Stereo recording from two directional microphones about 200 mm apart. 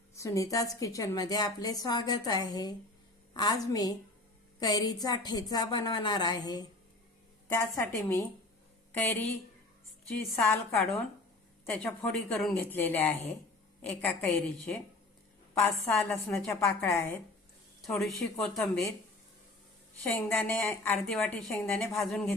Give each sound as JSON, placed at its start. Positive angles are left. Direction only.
{"t": 0.2, "sound": "a woman's voice", "side_deg": 15}
{"t": 10.3, "sound": "a woman's voice", "side_deg": 10}
{"t": 17.8, "sound": "a woman's voice", "side_deg": 0}
{"t": 20.1, "sound": "a woman's voice", "side_deg": 10}